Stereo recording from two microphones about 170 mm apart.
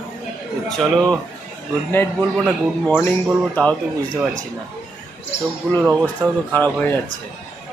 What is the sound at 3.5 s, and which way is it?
Speech, 5° left (ahead or behind).